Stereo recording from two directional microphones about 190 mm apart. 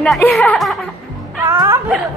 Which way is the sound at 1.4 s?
15° right (ahead or behind).